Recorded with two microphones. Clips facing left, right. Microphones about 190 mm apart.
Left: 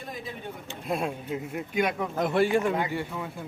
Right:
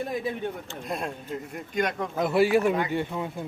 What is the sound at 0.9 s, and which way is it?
A man's voice, 5° left (ahead or behind).